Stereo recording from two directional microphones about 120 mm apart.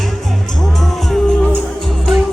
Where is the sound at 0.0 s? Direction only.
Centre (ahead or behind).